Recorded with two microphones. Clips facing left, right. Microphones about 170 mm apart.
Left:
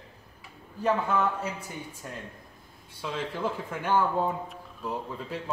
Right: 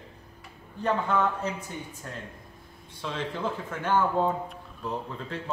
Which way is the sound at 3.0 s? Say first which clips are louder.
Even; 10° left (ahead or behind).